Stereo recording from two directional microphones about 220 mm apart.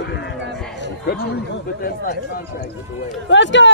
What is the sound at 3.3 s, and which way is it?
Speech, 55° left (ahead or behind).